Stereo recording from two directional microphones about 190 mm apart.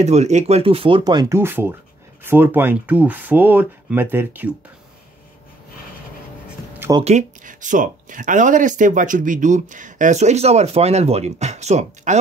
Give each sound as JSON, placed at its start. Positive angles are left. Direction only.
{"t": 0.0, "sound": "speech", "side_deg": -35}
{"t": 6.8, "sound": "a sound", "side_deg": -20}
{"t": 7.1, "sound": "speech", "side_deg": -40}